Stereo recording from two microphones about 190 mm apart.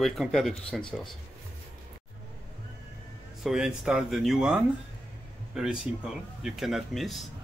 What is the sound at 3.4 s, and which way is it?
Speech, 5° right (ahead or behind).